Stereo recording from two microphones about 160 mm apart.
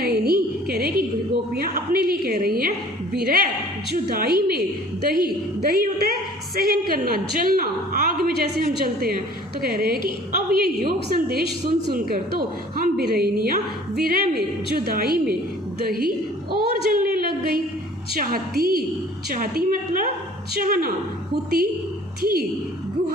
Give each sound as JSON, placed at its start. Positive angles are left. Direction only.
{"t": 0.0, "sound": "music", "side_deg": -75}
{"t": 1.5, "sound": "a woman's voice", "side_deg": -70}
{"t": 16.9, "sound": "a sound", "side_deg": -65}
{"t": 18.1, "sound": "a woman's voice", "side_deg": -70}
{"t": 22.2, "sound": "a woman's voice", "side_deg": -70}